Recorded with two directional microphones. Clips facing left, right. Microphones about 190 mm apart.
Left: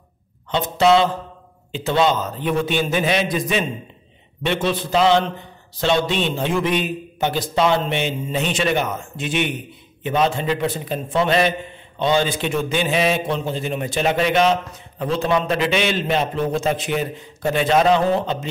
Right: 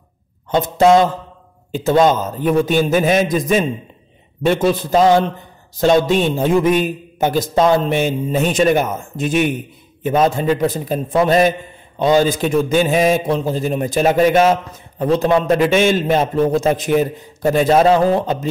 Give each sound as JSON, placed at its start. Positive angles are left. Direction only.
{"t": 0.5, "sound": "a man's voice", "side_deg": -45}